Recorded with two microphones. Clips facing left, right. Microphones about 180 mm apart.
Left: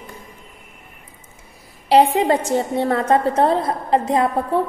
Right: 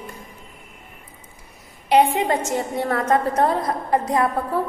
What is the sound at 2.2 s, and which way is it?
A woman's voice, 35° left (ahead or behind).